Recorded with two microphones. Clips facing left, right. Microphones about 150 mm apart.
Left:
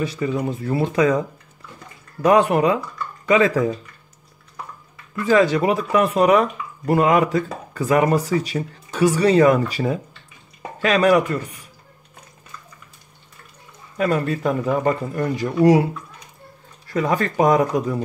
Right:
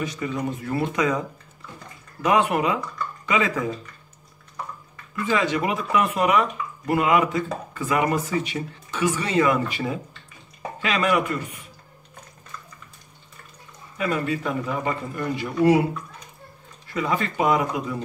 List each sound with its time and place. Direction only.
0.0 s speech: 30° left (ahead or behind)
2.2 s speech: 35° left (ahead or behind)
5.2 s speech: 40° left (ahead or behind)
13.9 s speech: 40° left (ahead or behind)
16.9 s speech: 40° left (ahead or behind)